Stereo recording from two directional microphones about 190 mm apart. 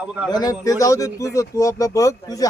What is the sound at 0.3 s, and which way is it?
Speech, 20° left (ahead or behind).